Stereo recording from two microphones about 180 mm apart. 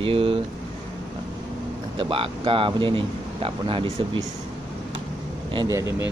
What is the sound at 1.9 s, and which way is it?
Speech, 30° right (ahead or behind).